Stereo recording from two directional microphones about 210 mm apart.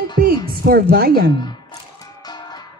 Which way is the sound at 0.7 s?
45° right (ahead or behind).